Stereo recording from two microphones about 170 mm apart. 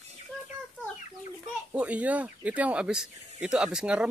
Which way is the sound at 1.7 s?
10° right (ahead or behind).